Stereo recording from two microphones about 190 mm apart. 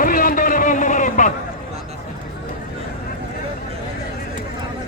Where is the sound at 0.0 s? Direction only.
45° left (ahead or behind).